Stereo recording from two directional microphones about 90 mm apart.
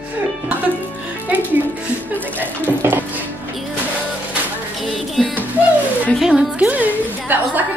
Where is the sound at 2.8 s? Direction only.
25° right (ahead or behind).